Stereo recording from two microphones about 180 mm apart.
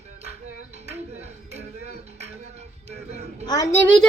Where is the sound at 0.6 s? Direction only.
35° right (ahead or behind).